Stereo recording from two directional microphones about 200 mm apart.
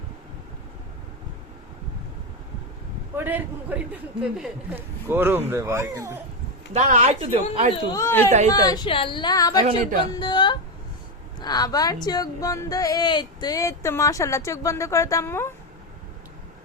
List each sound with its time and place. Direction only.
3.2 s speech: 10° right (ahead or behind)
6.7 s speech: 35° right (ahead or behind)
7.9 s a woman's voice: 15° left (ahead or behind)